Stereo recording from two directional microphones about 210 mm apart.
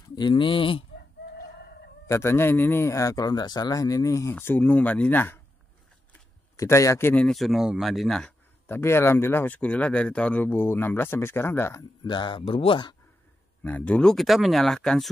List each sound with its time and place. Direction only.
0.1 s speech: 20° left (ahead or behind)
2.0 s speech: 15° left (ahead or behind)
6.5 s speech: 15° left (ahead or behind)
13.6 s speech: 5° left (ahead or behind)